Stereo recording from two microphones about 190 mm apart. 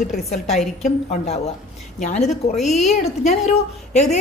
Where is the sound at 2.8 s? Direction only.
35° left (ahead or behind).